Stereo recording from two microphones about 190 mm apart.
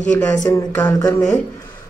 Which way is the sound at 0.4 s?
20° left (ahead or behind).